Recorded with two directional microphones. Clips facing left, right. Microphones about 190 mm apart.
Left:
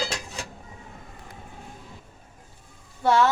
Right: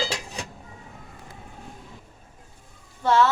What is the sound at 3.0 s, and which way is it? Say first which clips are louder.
Speech: even; 15° left (ahead or behind).